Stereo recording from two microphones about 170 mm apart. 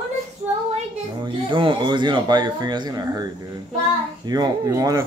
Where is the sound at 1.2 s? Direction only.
30° right (ahead or behind).